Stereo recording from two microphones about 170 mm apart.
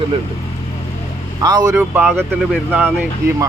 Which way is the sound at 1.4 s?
20° right (ahead or behind).